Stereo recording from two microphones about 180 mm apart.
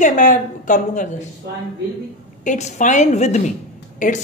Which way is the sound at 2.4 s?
40° left (ahead or behind).